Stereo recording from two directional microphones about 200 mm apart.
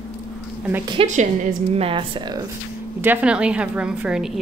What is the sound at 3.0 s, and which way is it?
A woman's voice, 10° right (ahead or behind).